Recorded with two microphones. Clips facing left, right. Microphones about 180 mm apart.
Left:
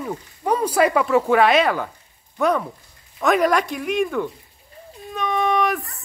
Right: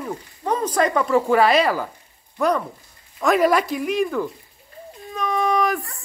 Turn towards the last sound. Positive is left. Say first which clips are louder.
# even
turn(degrees=0)  # may be behind; listen again after turning